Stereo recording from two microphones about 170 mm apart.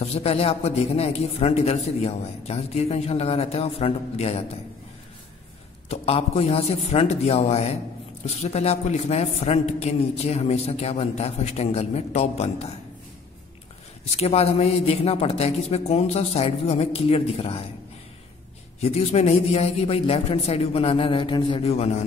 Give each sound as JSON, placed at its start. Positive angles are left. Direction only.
{"t": 0.0, "sound": "a man's voice", "side_deg": 35}
{"t": 5.9, "sound": "a man's voice", "side_deg": 35}
{"t": 14.1, "sound": "a man's voice", "side_deg": 35}
{"t": 18.8, "sound": "a man's voice", "side_deg": 35}